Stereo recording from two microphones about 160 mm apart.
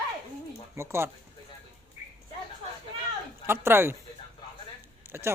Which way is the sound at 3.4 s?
15° right (ahead or behind).